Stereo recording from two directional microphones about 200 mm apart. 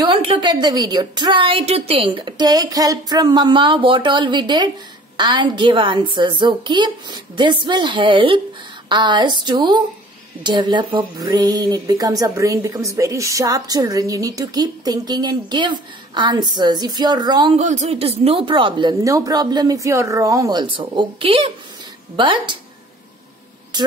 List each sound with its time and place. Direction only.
0.0 s speech: 25° right (ahead or behind)
17.6 s speech: 35° right (ahead or behind)